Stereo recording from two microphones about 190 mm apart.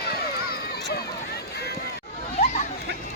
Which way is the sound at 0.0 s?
55° left (ahead or behind).